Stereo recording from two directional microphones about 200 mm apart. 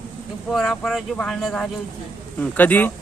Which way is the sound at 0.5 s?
Centre (ahead or behind).